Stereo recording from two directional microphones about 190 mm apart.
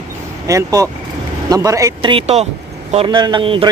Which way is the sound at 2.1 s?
35° right (ahead or behind).